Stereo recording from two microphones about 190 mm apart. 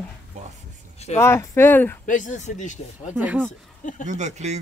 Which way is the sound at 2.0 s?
40° left (ahead or behind).